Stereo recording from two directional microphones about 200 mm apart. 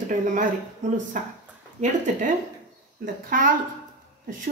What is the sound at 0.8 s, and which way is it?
A woman's voice, 35° right (ahead or behind).